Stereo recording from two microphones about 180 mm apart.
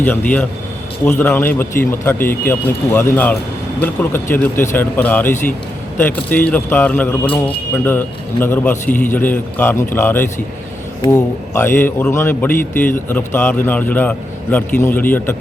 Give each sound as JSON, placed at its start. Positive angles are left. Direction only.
{"t": 0.0, "sound": "a man's voice", "side_deg": 10}